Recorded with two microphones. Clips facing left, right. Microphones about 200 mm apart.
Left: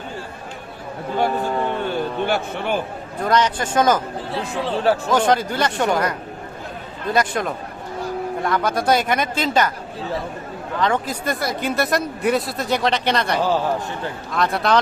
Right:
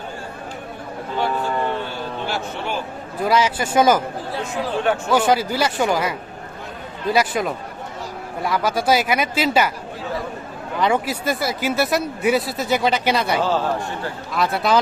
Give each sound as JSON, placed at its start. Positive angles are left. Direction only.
{"t": 1.9, "sound": "a sound", "side_deg": 55}
{"t": 3.2, "sound": "speech", "side_deg": -5}
{"t": 4.6, "sound": "speech", "side_deg": 35}
{"t": 5.1, "sound": "speech", "side_deg": -5}
{"t": 10.8, "sound": "speech", "side_deg": -10}
{"t": 13.4, "sound": "a man's voice", "side_deg": 15}
{"t": 14.3, "sound": "speech", "side_deg": -5}